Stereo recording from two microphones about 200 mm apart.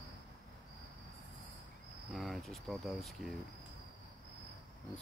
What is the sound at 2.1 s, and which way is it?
Cricket, centre (ahead or behind).